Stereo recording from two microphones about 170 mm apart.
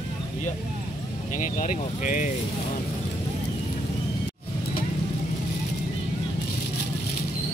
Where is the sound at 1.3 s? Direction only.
50° left (ahead or behind).